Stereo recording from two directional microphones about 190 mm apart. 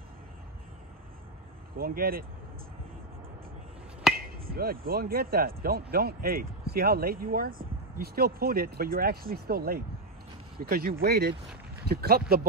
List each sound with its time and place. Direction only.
1.8 s speech: 50° right (ahead or behind)
4.1 s a sound: 5° right (ahead or behind)
4.5 s speech: 50° right (ahead or behind)